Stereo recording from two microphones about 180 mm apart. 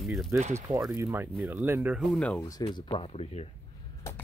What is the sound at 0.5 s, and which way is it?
Speech, 15° right (ahead or behind).